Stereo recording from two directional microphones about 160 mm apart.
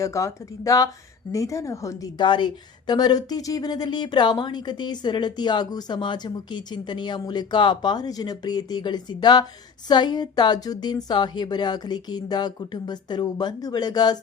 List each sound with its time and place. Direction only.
0.0 s a woman's voice: 20° left (ahead or behind)